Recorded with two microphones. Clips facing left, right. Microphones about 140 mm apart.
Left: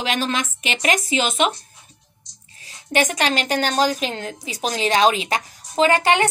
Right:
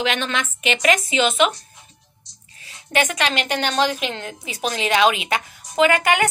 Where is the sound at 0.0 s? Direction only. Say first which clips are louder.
Even; 35° left (ahead or behind).